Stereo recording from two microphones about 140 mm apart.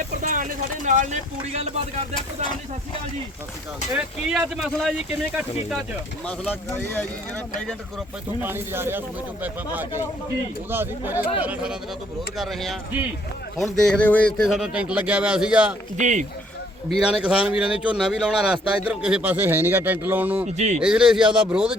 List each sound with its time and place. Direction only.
0.2 s speech: 70° right (ahead or behind); by 2.0 s 50° right (ahead or behind)
3.9 s speech: 5° right (ahead or behind)
6.5 s speech: 15° left (ahead or behind)
8.4 s speech: 15° right (ahead or behind)
16.0 s speech: 60° right (ahead or behind)
17.0 s speech: 5° right (ahead or behind)